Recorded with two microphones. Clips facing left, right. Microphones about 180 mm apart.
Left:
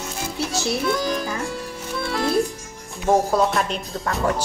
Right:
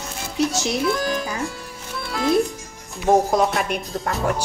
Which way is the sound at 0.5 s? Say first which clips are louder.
Even; 20° right (ahead or behind).